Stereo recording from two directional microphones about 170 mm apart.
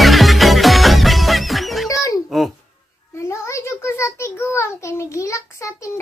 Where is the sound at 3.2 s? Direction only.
15° left (ahead or behind).